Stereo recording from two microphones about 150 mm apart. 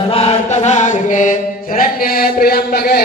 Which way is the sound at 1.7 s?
90° left.